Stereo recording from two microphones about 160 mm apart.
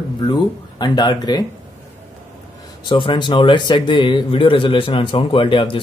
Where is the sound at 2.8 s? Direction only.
30° left (ahead or behind).